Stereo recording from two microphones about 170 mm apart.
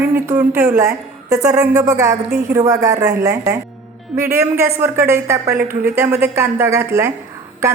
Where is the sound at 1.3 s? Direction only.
20° right (ahead or behind).